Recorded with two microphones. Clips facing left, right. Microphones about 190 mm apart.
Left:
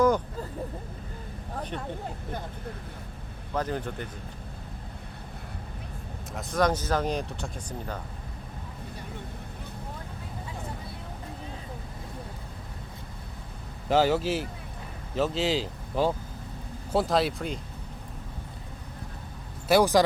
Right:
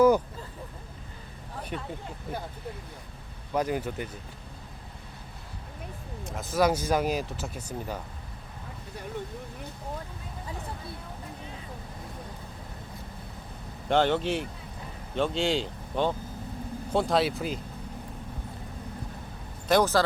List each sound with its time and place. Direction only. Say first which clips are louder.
3.5 s speech: right 2 dB; 10° right (ahead or behind)
6.3 s speech: right 1 dB; 5° right (ahead or behind)
13.8 s speech: left 1 dB; 5° left (ahead or behind)
19.6 s speech: left 2 dB; 10° left (ahead or behind)